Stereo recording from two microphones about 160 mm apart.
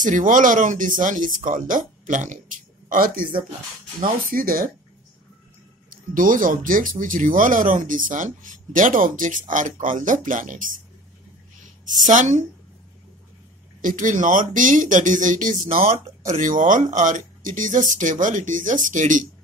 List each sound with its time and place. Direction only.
0.0 s speech: 55° right (ahead or behind)
5.9 s speech: 60° right (ahead or behind)
11.8 s speech: 55° right (ahead or behind)
13.7 s speech: 55° right (ahead or behind)